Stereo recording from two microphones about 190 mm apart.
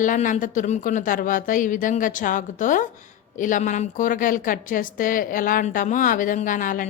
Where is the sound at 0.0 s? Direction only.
45° left (ahead or behind).